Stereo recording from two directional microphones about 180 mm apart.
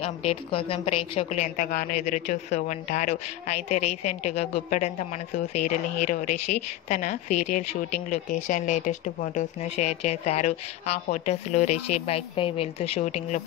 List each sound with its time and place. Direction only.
0.0 s a woman's voice: 30° left (ahead or behind)